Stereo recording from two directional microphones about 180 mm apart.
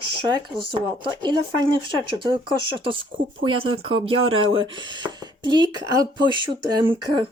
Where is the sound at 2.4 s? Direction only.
30° right (ahead or behind).